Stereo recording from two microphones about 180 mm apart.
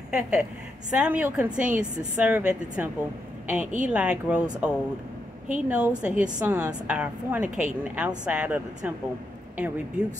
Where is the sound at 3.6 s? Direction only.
45° right (ahead or behind).